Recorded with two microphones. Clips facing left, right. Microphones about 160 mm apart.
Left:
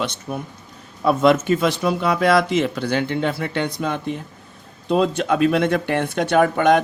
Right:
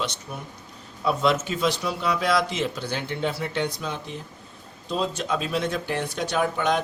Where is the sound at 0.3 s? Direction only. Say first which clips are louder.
Left 8 dB; 55° left (ahead or behind).